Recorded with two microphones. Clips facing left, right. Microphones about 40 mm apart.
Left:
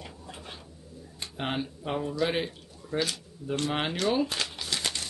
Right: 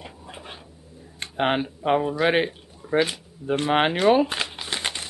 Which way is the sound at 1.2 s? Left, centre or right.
Right.